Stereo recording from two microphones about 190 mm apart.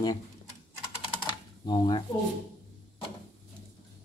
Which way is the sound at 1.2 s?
25° left (ahead or behind).